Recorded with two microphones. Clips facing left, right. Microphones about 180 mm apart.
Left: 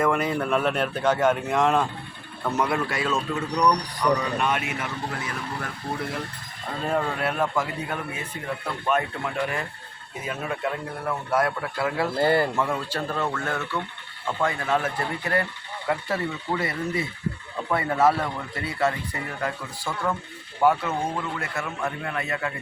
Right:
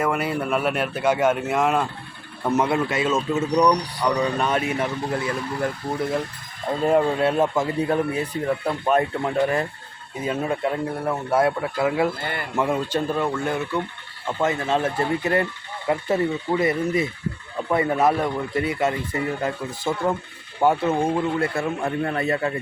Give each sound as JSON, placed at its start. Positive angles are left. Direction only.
{"t": 0.0, "sound": "a man's voice", "side_deg": -5}
{"t": 2.4, "sound": "a man's voice", "side_deg": -20}
{"t": 4.2, "sound": "speech", "side_deg": -35}
{"t": 6.9, "sound": "a man's voice", "side_deg": -25}
{"t": 12.2, "sound": "speech", "side_deg": 35}
{"t": 12.5, "sound": "a man's voice", "side_deg": -20}